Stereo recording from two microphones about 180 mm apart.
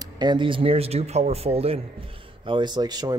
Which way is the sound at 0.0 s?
25° right (ahead or behind).